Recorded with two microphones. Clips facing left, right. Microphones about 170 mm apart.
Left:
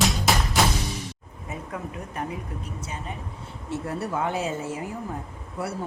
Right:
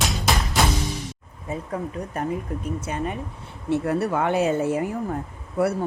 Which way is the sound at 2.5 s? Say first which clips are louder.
Right 6 dB; 50° right (ahead or behind).